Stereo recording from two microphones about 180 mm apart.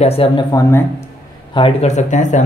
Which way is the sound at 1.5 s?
35° left (ahead or behind).